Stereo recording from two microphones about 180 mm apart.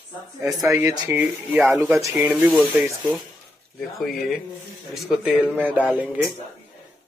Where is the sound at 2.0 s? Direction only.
15° right (ahead or behind).